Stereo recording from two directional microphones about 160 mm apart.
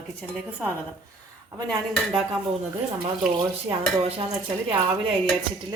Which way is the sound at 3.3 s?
35° right (ahead or behind).